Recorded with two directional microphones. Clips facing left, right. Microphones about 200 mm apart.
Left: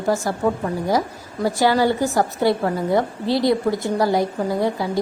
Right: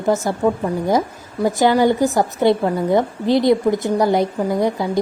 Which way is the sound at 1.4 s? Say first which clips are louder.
Right 3 dB; 20° right (ahead or behind).